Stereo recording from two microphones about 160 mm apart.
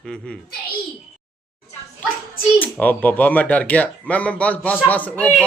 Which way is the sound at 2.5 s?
10° left (ahead or behind).